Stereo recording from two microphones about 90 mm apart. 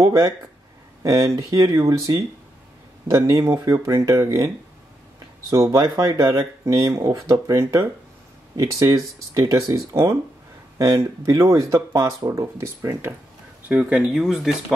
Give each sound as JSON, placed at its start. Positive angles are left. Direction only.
{"t": 0.0, "sound": "speech", "side_deg": -40}
{"t": 3.1, "sound": "speech", "side_deg": -35}
{"t": 5.5, "sound": "speech", "side_deg": -35}
{"t": 13.7, "sound": "speech", "side_deg": -15}